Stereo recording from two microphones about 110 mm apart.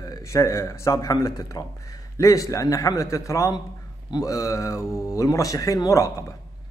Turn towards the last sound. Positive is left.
turn(degrees=30)  # may be behind; listen again after turning